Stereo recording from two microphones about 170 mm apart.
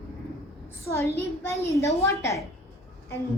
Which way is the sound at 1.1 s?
15° left (ahead or behind).